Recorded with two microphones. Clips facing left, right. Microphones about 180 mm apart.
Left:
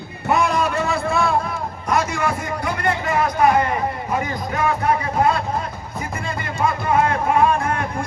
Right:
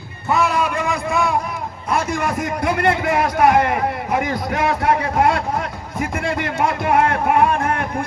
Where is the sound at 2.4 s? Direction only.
75° right (ahead or behind).